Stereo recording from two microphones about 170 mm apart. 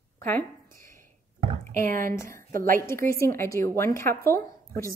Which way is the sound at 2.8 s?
15° left (ahead or behind).